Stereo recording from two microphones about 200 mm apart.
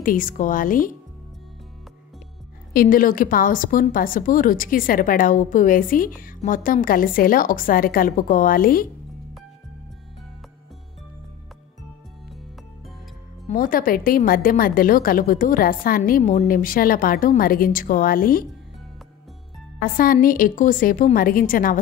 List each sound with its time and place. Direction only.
0.0 s a woman's voice: 45° left (ahead or behind)
2.7 s a woman's voice: 45° left (ahead or behind)
13.5 s a woman's voice: 45° left (ahead or behind)
20.0 s a woman's voice: 45° left (ahead or behind)